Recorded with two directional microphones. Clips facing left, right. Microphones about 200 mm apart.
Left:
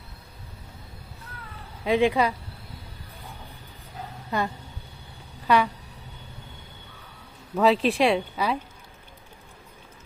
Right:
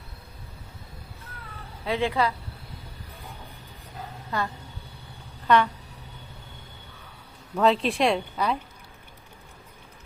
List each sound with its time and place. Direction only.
1.8 s speech: 15° left (ahead or behind)
4.3 s speech: 20° left (ahead or behind)
5.5 s speech: 10° left (ahead or behind)
7.5 s speech: 5° left (ahead or behind)